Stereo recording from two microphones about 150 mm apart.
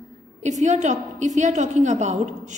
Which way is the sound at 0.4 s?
50° right (ahead or behind).